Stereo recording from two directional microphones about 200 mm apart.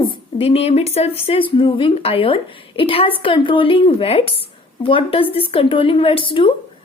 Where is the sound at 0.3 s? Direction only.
30° left (ahead or behind).